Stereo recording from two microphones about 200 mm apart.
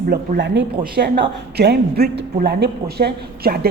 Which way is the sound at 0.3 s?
60° right (ahead or behind).